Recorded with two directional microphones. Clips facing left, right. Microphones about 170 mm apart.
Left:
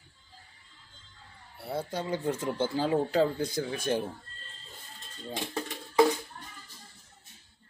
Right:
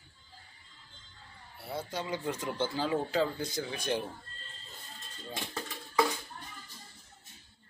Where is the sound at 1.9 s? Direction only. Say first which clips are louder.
Left 3 dB; 50° left (ahead or behind).